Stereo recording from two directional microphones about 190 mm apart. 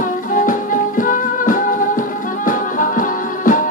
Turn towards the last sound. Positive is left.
turn(degrees=45)  # may be behind; listen again after turning